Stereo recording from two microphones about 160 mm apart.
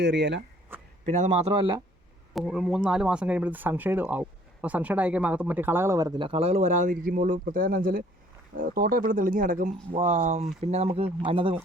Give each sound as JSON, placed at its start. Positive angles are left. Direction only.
{"t": 0.0, "sound": "speech", "side_deg": -90}
{"t": 0.7, "sound": "a sound", "side_deg": -10}
{"t": 1.0, "sound": "speech", "side_deg": -50}
{"t": 2.3, "sound": "speech", "side_deg": -5}
{"t": 10.0, "sound": "speech", "side_deg": -45}